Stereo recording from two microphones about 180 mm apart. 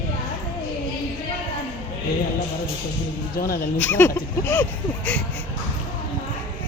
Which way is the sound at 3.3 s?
55° left (ahead or behind).